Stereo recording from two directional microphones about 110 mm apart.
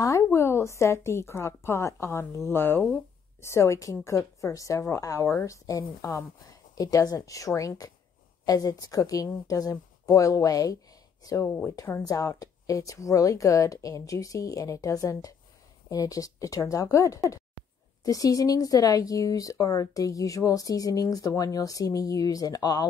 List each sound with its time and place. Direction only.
0.0 s a woman's voice: 25° left (ahead or behind)